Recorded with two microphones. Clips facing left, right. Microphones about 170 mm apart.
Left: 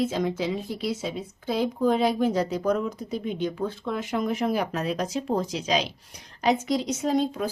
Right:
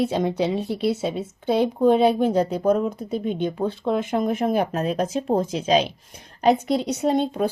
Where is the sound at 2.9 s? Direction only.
55° right (ahead or behind).